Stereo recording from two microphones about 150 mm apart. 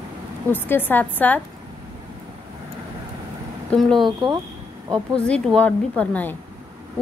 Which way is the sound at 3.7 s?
5° left (ahead or behind).